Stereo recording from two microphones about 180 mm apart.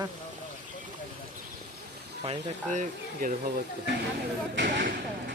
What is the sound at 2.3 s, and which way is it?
Speech, 40° right (ahead or behind).